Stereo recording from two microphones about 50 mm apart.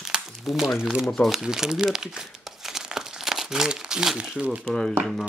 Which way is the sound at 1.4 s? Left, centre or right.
Centre.